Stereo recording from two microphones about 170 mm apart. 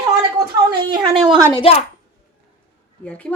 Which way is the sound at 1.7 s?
35° left (ahead or behind).